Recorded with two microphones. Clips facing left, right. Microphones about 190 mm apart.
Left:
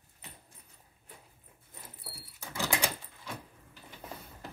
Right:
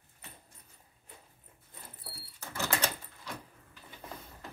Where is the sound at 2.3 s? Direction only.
15° left (ahead or behind).